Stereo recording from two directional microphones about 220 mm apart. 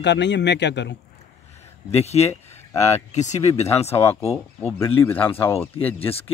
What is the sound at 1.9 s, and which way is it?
Speech, 30° left (ahead or behind).